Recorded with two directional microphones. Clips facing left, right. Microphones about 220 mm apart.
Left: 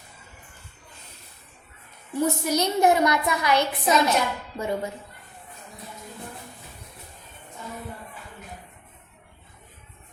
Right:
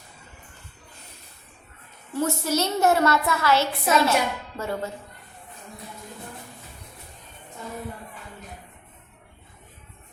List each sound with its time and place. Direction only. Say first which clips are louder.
2.1 s a woman's voice: left 1 dB; 15° left (ahead or behind)